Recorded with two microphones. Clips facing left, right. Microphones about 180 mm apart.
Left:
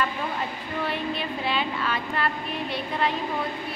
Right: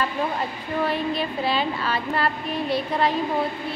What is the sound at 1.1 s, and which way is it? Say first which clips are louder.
A woman's voice: right 4 dB; 35° right (ahead or behind).